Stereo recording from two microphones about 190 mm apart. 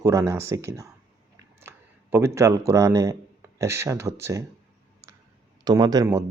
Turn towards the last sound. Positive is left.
turn(degrees=-20)  # may be behind; listen again after turning